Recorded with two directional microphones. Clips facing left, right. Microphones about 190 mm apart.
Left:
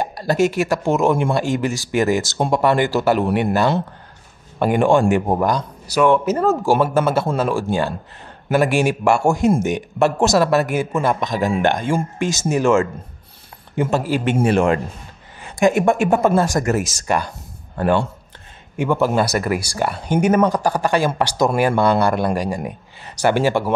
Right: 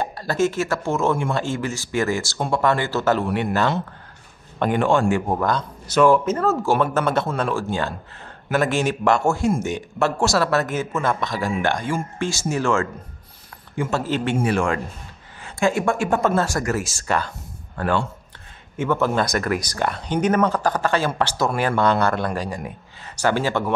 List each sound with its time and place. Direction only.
0.0 s speech: 15° left (ahead or behind)
4.6 s speech: 10° left (ahead or behind)
6.0 s speech: centre (ahead or behind)
6.3 s speech: 15° left (ahead or behind)